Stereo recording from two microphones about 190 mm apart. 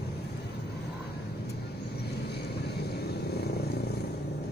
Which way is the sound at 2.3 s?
60° left (ahead or behind).